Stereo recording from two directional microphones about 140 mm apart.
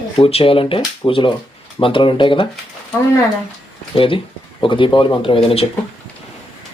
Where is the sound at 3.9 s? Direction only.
40° left (ahead or behind).